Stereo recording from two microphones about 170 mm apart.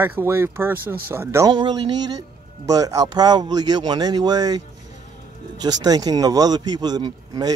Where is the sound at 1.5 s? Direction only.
25° right (ahead or behind).